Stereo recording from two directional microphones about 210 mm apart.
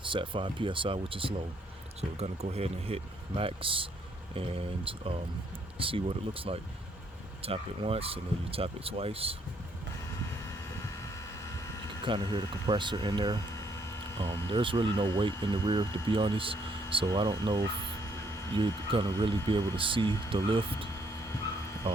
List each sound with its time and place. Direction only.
0.0 s speech: 25° right (ahead or behind)
12.0 s speech: 25° right (ahead or behind)
21.9 s speech: 25° right (ahead or behind)